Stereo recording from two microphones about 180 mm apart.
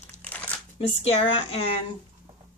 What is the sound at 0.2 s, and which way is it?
Crumpling, 10° left (ahead or behind).